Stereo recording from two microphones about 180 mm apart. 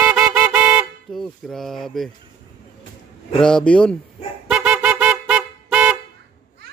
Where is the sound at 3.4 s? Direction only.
5° left (ahead or behind).